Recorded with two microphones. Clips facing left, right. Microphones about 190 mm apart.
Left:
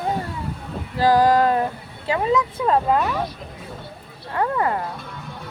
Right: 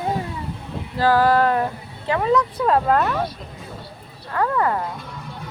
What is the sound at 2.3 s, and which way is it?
Speech, 5° left (ahead or behind).